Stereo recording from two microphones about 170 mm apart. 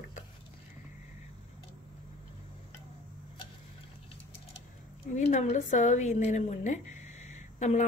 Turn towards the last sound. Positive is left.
turn(degrees=45)  # may be behind; listen again after turning